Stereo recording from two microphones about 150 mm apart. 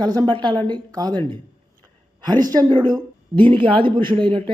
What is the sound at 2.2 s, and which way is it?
Speech, 25° right (ahead or behind).